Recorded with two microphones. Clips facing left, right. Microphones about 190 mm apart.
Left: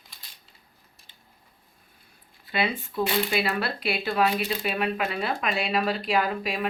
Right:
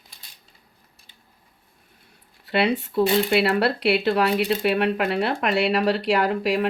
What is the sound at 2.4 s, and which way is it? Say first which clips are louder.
Speech: right 6 dB; 70° right (ahead or behind).